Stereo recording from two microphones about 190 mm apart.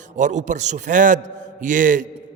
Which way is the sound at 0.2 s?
40° right (ahead or behind).